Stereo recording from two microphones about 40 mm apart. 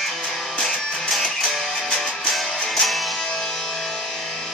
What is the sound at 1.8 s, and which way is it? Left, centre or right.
Music, left.